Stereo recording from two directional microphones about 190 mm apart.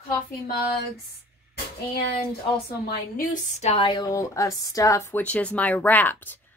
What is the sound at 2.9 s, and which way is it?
Speech, 50° left (ahead or behind).